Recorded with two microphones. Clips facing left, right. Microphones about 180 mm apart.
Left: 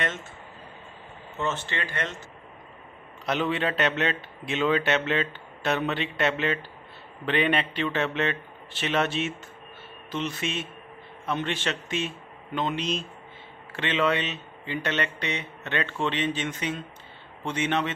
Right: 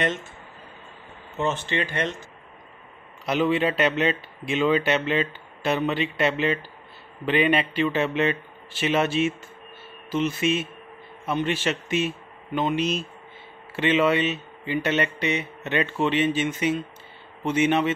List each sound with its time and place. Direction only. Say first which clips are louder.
1.4 s speech: right 4 dB; 15° right (ahead or behind)
3.3 s speech: right 4 dB; 5° right (ahead or behind)